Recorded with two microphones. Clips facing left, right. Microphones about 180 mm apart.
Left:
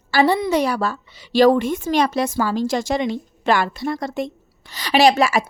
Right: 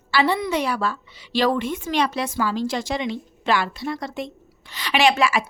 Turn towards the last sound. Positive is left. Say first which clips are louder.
# left 4 dB
turn(degrees=40)  # may be behind; listen again after turning